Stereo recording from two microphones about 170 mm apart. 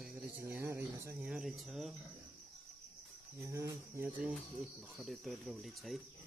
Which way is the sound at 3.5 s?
15° right (ahead or behind).